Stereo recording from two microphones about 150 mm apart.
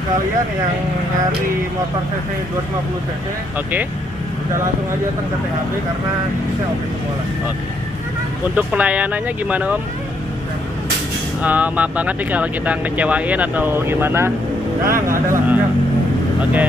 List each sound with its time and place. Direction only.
8.5 s speech: 10° right (ahead or behind)
11.4 s speech: 10° right (ahead or behind)